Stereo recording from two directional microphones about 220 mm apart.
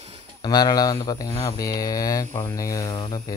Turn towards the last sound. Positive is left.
turn(degrees=20)  # may be behind; listen again after turning